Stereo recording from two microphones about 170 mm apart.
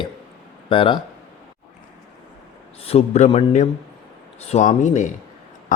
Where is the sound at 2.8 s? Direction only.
40° left (ahead or behind).